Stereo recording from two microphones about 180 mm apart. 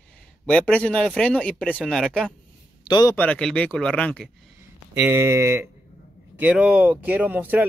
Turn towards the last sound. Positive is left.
turn(degrees=-10)  # may be behind; listen again after turning